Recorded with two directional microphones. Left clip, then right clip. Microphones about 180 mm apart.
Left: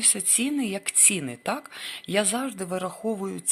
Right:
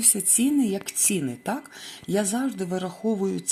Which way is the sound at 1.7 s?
20° left (ahead or behind).